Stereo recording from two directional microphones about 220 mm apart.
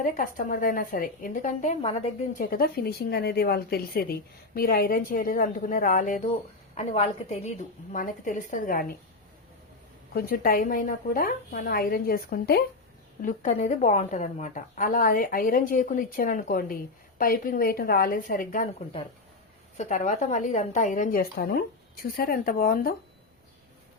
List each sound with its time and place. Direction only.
0.0 s a woman's voice: 40° left (ahead or behind)
2.4 s a woman's voice: 40° left (ahead or behind)
10.2 s a woman's voice: 45° left (ahead or behind)
13.2 s a woman's voice: 35° left (ahead or behind)
19.7 s a woman's voice: 30° left (ahead or behind)